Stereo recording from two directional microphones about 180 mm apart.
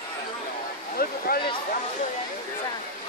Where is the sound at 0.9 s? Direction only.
55° left (ahead or behind).